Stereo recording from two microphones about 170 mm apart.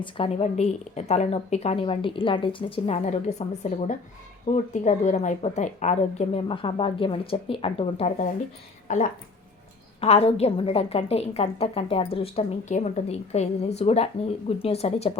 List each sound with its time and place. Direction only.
0.0 s a woman's voice: 35° left (ahead or behind)
8.9 s speech: 45° left (ahead or behind)
10.0 s a woman's voice: 35° left (ahead or behind)